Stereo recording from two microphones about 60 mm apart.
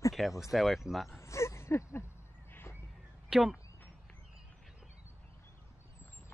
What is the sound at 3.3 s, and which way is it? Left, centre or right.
Speech, centre.